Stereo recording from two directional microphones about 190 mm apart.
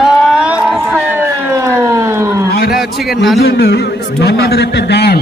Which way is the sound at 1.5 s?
15° right (ahead or behind).